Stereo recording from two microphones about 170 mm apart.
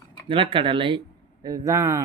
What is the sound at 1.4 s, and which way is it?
Speech, 20° right (ahead or behind).